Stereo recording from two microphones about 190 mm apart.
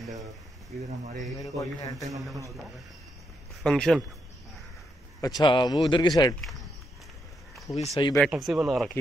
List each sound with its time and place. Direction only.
1.4 s speech: 20° left (ahead or behind)
3.6 s speech: 5° left (ahead or behind)
5.2 s speech: 25° left (ahead or behind)
7.9 s speech: 15° left (ahead or behind)
8.2 s speech: centre (ahead or behind)